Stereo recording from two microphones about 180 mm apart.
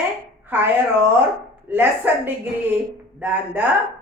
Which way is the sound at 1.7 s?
10° right (ahead or behind).